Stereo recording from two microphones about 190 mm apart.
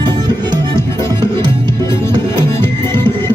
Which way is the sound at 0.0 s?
20° right (ahead or behind).